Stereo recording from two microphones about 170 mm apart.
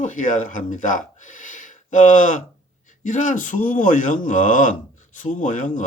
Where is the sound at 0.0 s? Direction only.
50° left (ahead or behind).